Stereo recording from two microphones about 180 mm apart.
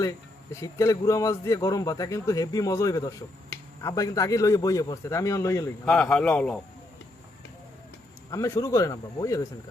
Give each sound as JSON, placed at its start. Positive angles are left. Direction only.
{"t": 0.6, "sound": "a man's voice", "side_deg": 15}
{"t": 5.8, "sound": "a man's voice", "side_deg": 5}
{"t": 8.3, "sound": "speech", "side_deg": 20}